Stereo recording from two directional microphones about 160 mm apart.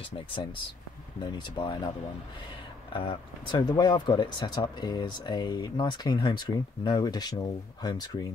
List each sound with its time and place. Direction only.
1.2 s speech: 25° left (ahead or behind)
2.9 s speech: 30° left (ahead or behind)